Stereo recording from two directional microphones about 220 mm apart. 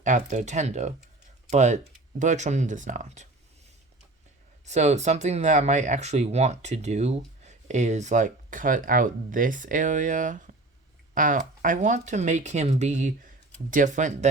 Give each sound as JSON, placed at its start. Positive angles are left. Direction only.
{"t": 0.0, "sound": "speech", "side_deg": -35}
{"t": 4.6, "sound": "speech", "side_deg": -30}